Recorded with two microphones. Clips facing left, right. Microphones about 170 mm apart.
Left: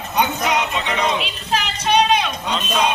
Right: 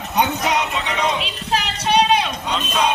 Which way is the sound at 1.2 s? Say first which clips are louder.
Even; 35° right (ahead or behind).